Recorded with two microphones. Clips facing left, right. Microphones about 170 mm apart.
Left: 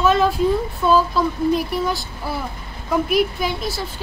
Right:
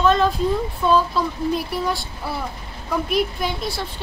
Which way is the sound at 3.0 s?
Centre (ahead or behind).